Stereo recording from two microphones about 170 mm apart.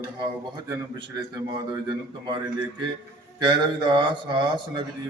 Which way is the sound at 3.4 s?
30° right (ahead or behind).